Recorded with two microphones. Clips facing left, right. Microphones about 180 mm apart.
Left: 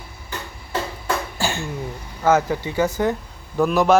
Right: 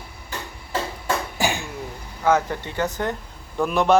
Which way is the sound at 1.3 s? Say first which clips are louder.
Right 1 dB; 15° right (ahead or behind).